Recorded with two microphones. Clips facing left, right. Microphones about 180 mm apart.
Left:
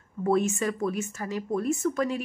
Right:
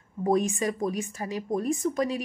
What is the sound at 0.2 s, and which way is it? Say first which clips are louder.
A woman's voice: even; 15° right (ahead or behind).